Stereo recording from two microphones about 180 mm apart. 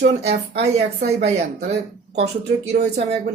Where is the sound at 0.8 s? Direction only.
65° right (ahead or behind).